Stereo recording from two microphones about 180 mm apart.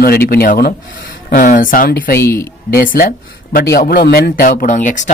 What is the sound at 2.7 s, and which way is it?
A man's voice, 55° left (ahead or behind).